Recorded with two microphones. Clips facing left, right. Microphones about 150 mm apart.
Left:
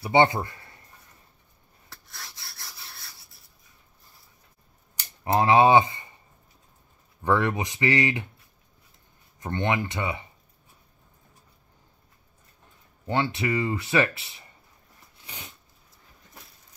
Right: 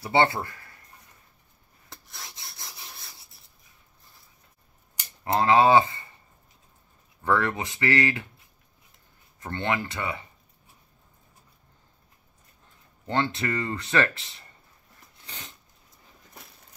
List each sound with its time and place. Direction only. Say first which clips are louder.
0.0 s speech: left 2 dB; 15° left (ahead or behind)
1.9 s rub: right 1 dB; 20° right (ahead or behind)
5.3 s speech: left 1 dB; 15° left (ahead or behind)
7.2 s speech: left 1 dB; 15° left (ahead or behind)
9.4 s speech: left 2 dB; 15° left (ahead or behind)
13.0 s speech: left 1 dB; 10° left (ahead or behind)
15.2 s a sound: left 1 dB; 10° left (ahead or behind)